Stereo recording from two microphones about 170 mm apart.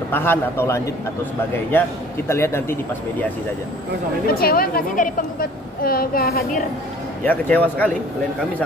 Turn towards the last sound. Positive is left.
turn(degrees=10)  # may be behind; listen again after turning